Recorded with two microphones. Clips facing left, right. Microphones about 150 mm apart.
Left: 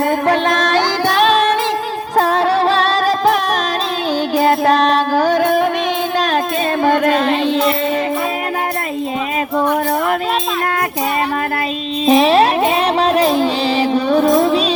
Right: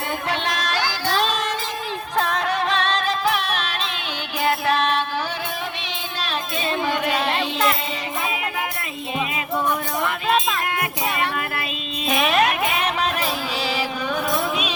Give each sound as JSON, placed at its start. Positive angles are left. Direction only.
{"t": 0.3, "sound": "music", "side_deg": 45}
{"t": 2.1, "sound": "music", "side_deg": 35}
{"t": 6.8, "sound": "a sound", "side_deg": 50}
{"t": 12.0, "sound": "music", "side_deg": 30}